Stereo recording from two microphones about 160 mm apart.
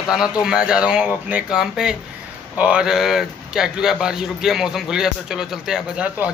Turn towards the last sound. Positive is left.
turn(degrees=-5)  # may be behind; listen again after turning